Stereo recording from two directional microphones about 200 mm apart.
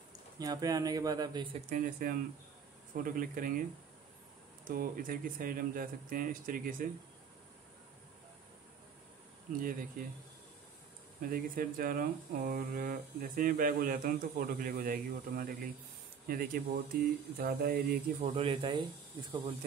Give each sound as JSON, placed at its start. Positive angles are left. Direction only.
{"t": 0.4, "sound": "speech", "side_deg": -20}
{"t": 1.7, "sound": "speech", "side_deg": -45}
{"t": 4.6, "sound": "speech", "side_deg": -45}
{"t": 9.6, "sound": "speech", "side_deg": -45}
{"t": 11.2, "sound": "speech", "side_deg": -45}
{"t": 18.3, "sound": "speech", "side_deg": -30}